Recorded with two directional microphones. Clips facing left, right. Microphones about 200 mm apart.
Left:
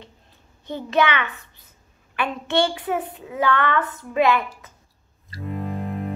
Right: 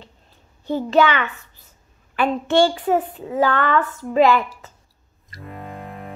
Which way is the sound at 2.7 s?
35° right (ahead or behind).